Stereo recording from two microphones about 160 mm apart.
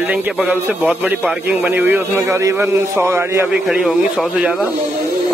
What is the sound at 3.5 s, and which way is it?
Speech, centre (ahead or behind).